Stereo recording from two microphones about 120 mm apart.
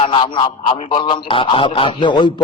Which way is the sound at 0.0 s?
45° left (ahead or behind).